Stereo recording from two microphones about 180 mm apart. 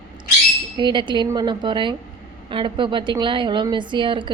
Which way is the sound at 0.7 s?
25° right (ahead or behind).